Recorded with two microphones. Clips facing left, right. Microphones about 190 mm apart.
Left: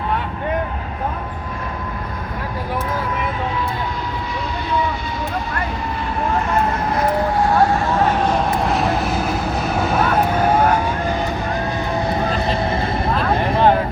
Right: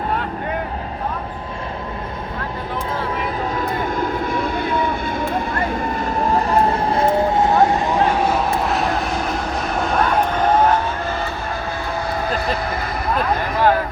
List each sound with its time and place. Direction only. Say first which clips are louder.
4.3 s vehicle: right 4 dB; 50° right (ahead or behind)
6.5 s vehicle: right 2 dB; 25° right (ahead or behind); by 10.8 s 10° left (ahead or behind)
13.5 s vehicle: left 2 dB; 25° left (ahead or behind)